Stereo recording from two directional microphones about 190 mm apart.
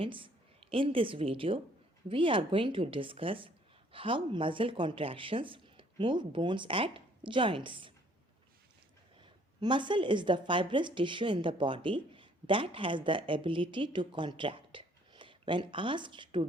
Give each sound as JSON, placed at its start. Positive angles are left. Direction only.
{"t": 0.0, "sound": "speech", "side_deg": -25}
{"t": 9.2, "sound": "speech", "side_deg": -25}